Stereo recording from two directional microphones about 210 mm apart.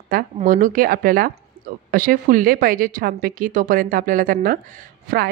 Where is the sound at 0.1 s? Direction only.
40° right (ahead or behind).